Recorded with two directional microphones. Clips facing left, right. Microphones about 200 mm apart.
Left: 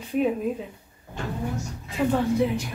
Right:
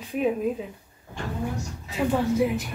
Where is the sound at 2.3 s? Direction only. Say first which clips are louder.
Even; 5° right (ahead or behind).